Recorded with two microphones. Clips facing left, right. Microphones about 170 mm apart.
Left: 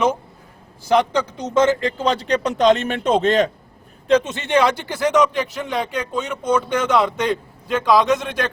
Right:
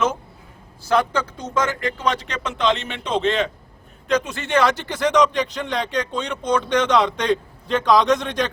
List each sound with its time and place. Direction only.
0.9 s a man's voice: 15° left (ahead or behind); by 3.5 s 40° left (ahead or behind)
4.1 s speech: 25° left (ahead or behind); by 8.4 s 5° left (ahead or behind)